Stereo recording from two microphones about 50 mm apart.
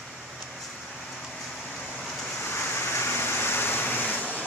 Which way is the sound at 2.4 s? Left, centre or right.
Left.